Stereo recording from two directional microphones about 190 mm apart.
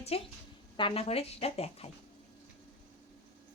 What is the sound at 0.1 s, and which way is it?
Speech, 30° left (ahead or behind).